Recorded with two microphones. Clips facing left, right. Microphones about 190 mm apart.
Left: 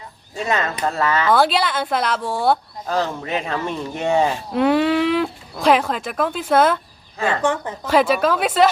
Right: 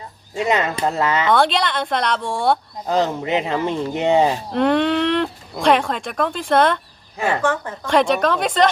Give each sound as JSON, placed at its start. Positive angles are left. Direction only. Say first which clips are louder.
{"t": 0.3, "sound": "speech", "louder": "right 3 dB", "side_deg": -15}
{"t": 1.3, "sound": "speech", "louder": "left 2 dB", "side_deg": 5}
{"t": 2.8, "sound": "speech", "louder": "right 4 dB", "side_deg": -20}
{"t": 4.5, "sound": "speech", "louder": "left 2 dB", "side_deg": 5}
{"t": 7.2, "sound": "speech", "louder": "right 1 dB", "side_deg": -15}
{"t": 7.9, "sound": "speech", "louder": "even", "side_deg": 5}